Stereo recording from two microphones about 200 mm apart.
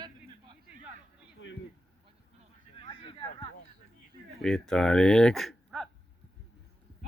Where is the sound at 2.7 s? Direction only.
25° left (ahead or behind).